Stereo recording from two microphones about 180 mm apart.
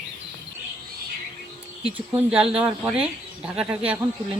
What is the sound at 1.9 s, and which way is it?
Speech, 10° right (ahead or behind).